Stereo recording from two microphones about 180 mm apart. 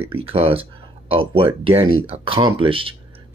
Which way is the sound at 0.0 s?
30° right (ahead or behind).